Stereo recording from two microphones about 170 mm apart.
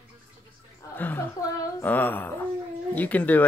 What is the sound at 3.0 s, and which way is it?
Speech, 10° left (ahead or behind).